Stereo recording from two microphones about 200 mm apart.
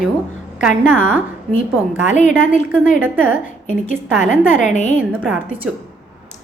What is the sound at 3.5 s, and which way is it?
A woman's voice, 40° left (ahead or behind).